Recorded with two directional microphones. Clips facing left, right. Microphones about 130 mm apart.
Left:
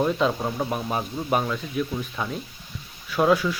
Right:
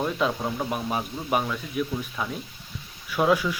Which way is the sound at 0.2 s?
5° left (ahead or behind).